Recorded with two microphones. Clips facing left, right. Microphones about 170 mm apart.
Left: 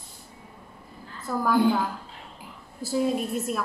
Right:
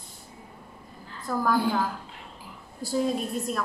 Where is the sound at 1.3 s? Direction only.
5° left (ahead or behind).